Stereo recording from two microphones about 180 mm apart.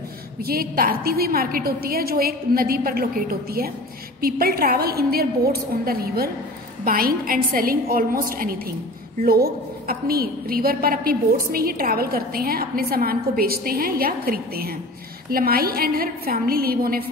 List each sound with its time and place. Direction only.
0.5 s a woman's voice: 55° right (ahead or behind)